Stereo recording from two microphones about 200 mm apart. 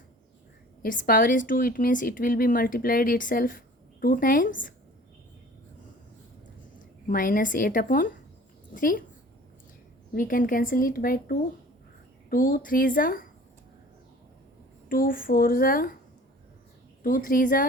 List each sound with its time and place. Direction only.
0.8 s a woman's voice: 45° left (ahead or behind)
7.1 s a woman's voice: 45° left (ahead or behind)
10.2 s a woman's voice: 45° left (ahead or behind)
14.8 s a woman's voice: 45° left (ahead or behind)
17.0 s a woman's voice: 45° left (ahead or behind)